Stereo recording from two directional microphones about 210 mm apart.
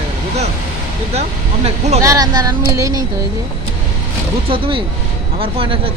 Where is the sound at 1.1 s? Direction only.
30° right (ahead or behind).